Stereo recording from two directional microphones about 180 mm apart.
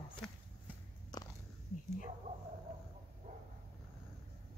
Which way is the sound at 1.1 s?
20° left (ahead or behind).